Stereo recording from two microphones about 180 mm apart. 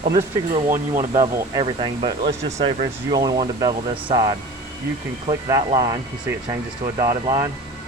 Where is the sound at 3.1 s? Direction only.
20° right (ahead or behind).